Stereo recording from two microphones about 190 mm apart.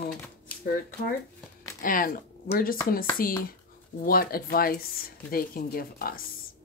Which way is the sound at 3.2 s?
50° left (ahead or behind).